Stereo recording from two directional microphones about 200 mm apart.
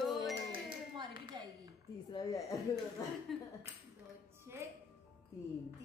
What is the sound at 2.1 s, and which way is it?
Speech, 20° left (ahead or behind).